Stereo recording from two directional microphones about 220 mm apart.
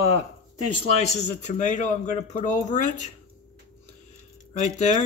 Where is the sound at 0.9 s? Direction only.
30° left (ahead or behind).